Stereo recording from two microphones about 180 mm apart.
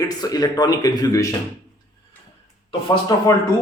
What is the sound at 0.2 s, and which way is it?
Speech, 20° left (ahead or behind).